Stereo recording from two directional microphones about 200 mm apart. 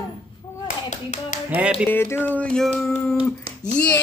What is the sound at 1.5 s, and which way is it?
Speech, 10° right (ahead or behind).